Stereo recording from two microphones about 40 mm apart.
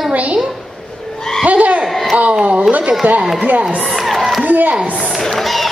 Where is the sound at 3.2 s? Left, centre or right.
Centre.